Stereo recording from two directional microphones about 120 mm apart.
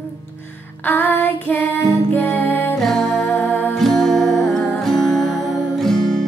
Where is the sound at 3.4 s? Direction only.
15° left (ahead or behind).